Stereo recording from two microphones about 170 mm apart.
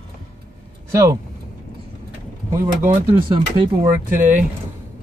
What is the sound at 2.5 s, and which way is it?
Speech, 15° right (ahead or behind).